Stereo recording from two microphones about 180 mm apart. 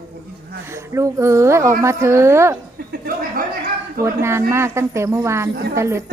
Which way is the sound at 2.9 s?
55° right (ahead or behind).